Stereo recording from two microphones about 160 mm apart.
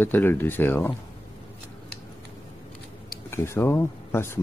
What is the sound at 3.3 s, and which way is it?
Speech, 15° left (ahead or behind).